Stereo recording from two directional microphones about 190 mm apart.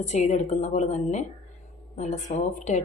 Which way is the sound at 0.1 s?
35° left (ahead or behind).